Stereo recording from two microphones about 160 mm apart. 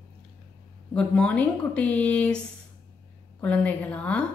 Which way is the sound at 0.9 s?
5° left (ahead or behind).